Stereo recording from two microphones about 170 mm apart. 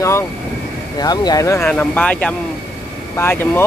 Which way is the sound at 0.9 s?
25° left (ahead or behind).